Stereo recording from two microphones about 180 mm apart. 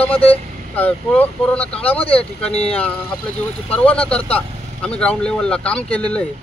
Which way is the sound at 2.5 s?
35° left (ahead or behind).